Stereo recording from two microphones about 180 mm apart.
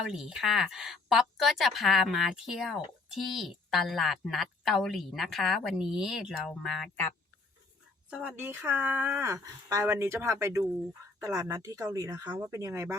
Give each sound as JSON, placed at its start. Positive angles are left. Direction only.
{"t": 0.1, "sound": "speech", "side_deg": 0}
{"t": 8.1, "sound": "speech", "side_deg": -5}